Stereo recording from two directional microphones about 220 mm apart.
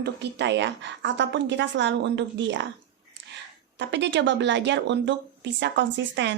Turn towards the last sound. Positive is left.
turn(degrees=-55)  # may be behind; listen again after turning